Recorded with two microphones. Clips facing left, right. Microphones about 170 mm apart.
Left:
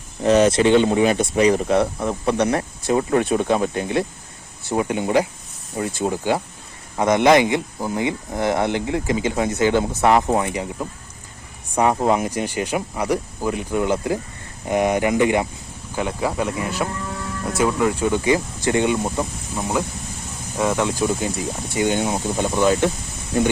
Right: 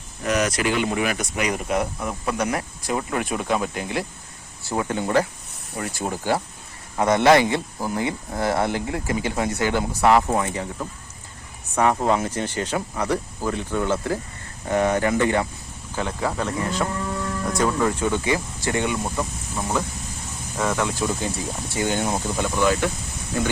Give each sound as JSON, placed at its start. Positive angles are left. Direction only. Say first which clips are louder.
{"t": 0.2, "sound": "speech", "louder": "left 8 dB", "side_deg": 30}